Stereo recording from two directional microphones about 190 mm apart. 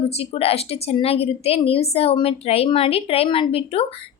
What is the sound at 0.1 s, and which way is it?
A woman's voice, 35° left (ahead or behind).